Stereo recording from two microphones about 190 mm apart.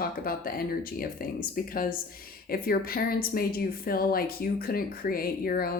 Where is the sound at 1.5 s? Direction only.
50° left (ahead or behind).